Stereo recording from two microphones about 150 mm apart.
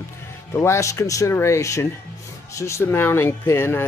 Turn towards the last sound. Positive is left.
turn(degrees=15)  # may be behind; listen again after turning